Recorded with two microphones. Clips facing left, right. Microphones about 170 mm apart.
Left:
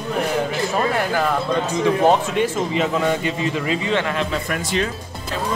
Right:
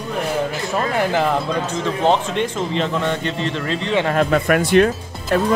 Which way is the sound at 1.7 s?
10° left (ahead or behind).